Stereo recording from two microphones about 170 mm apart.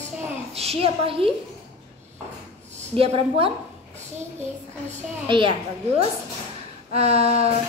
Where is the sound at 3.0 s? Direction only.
35° right (ahead or behind).